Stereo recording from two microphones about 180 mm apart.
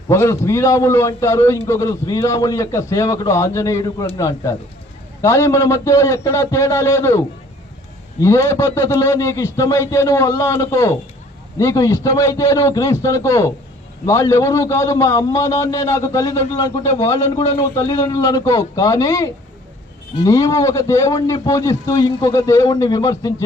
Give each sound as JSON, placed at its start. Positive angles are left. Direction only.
{"t": 0.1, "sound": "a man's voice", "side_deg": 15}